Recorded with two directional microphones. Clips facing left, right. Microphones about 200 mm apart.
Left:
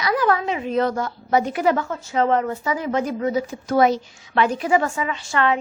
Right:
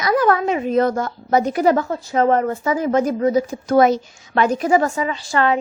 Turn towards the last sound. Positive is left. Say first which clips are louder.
# right 2 dB
turn(degrees=-35)  # may be behind; listen again after turning